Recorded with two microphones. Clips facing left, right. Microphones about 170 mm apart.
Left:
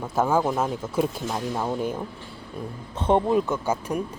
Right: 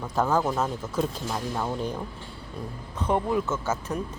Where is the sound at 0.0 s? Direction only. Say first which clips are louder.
Left 2 dB; 10° left (ahead or behind).